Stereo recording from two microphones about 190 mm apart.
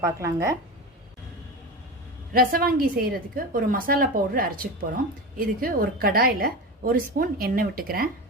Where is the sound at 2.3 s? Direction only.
50° right (ahead or behind).